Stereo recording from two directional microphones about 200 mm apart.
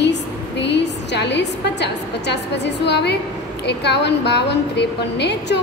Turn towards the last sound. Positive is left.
turn(degrees=60)  # may be behind; listen again after turning